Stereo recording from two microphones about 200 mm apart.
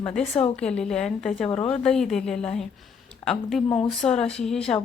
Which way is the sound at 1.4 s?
30° left (ahead or behind).